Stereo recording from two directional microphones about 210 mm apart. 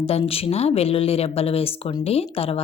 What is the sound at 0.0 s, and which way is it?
Speech, 30° left (ahead or behind).